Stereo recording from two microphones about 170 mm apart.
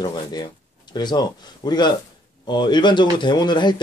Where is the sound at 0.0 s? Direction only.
25° left (ahead or behind).